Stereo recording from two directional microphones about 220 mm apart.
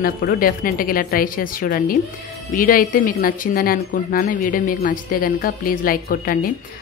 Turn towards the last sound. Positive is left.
turn(degrees=40)  # may be behind; listen again after turning